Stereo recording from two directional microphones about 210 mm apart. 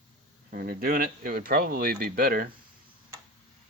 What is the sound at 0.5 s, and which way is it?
Speech, 45° right (ahead or behind).